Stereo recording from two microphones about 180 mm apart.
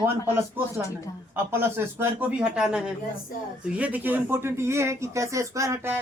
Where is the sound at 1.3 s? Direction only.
10° right (ahead or behind).